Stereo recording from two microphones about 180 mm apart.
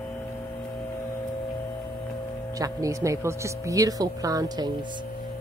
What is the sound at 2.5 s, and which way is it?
Speech, 20° right (ahead or behind).